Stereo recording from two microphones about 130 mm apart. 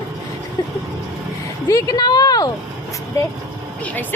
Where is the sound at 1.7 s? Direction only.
30° left (ahead or behind).